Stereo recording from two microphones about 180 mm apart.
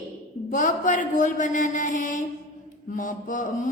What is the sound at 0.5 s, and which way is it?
Mantra, 45° left (ahead or behind).